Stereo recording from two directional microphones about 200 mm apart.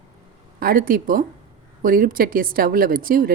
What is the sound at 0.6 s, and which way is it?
A woman's voice, 45° right (ahead or behind).